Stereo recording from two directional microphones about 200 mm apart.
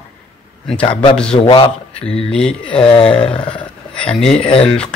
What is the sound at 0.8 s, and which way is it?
Speech, 25° left (ahead or behind).